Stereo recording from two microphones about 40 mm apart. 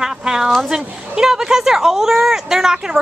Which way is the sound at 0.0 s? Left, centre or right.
Centre.